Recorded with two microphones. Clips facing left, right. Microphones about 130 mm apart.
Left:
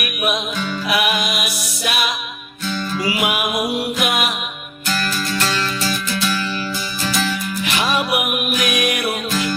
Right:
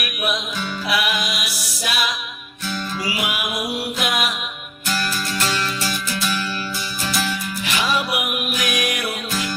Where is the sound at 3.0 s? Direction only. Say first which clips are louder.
Left 6 dB; 60° left (ahead or behind).